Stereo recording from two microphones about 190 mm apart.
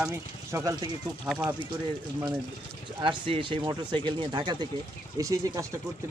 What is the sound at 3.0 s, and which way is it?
Speech, 25° right (ahead or behind).